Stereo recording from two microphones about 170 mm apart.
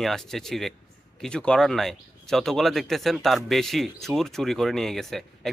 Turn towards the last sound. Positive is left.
turn(degrees=0)  # may be behind; listen again after turning